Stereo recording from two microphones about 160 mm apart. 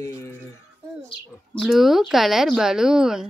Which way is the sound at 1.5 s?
Centre (ahead or behind).